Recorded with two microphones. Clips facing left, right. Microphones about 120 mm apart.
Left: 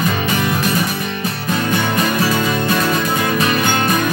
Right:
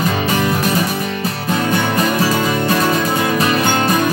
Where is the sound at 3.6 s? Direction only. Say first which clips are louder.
Right 1 dB; 30° right (ahead or behind).